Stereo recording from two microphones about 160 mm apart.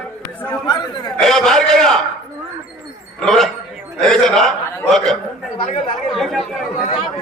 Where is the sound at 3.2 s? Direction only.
Centre (ahead or behind).